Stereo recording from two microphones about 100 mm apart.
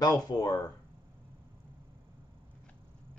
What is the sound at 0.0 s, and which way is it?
Speech, 40° left (ahead or behind).